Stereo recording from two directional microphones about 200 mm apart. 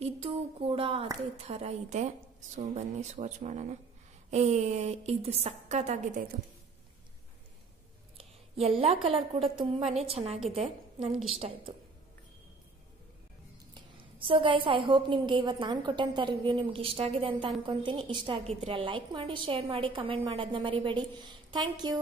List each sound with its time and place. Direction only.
0.0 s a woman's voice: 30° right (ahead or behind)
8.2 s a woman's voice: 30° right (ahead or behind)
13.7 s a woman's voice: 25° right (ahead or behind)